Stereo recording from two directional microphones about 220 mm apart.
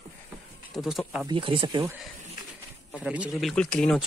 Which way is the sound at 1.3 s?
25° right (ahead or behind).